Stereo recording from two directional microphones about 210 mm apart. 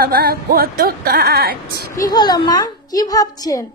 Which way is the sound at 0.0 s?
45° right (ahead or behind).